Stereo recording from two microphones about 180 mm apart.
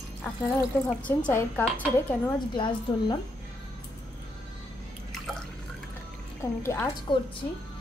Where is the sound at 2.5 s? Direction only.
25° left (ahead or behind).